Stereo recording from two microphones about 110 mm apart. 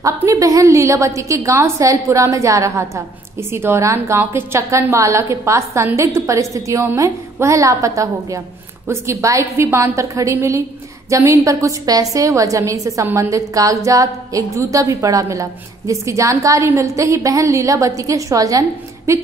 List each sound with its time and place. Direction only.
0.0 s a woman's voice: 30° right (ahead or behind)